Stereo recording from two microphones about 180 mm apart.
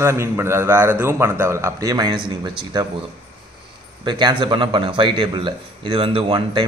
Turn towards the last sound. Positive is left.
turn(degrees=-25)  # may be behind; listen again after turning